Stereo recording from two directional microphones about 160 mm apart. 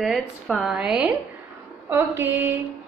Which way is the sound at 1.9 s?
15° right (ahead or behind).